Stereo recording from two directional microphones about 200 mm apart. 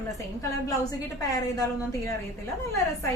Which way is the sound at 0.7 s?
15° left (ahead or behind).